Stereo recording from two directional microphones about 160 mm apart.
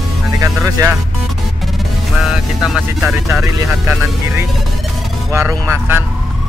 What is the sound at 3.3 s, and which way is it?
Speech, 15° right (ahead or behind).